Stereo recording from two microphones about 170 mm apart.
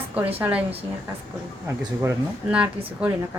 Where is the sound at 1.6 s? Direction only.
15° right (ahead or behind).